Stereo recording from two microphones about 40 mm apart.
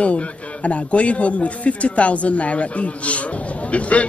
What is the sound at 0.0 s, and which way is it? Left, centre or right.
A man's voice, left.